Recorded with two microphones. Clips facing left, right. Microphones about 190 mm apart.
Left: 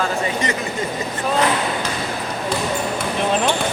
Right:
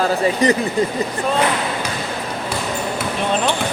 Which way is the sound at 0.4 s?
35° right (ahead or behind).